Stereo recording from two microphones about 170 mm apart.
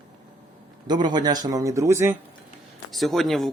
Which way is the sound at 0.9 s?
25° right (ahead or behind).